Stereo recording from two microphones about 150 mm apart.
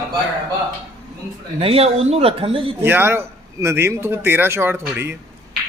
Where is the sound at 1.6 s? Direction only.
40° right (ahead or behind).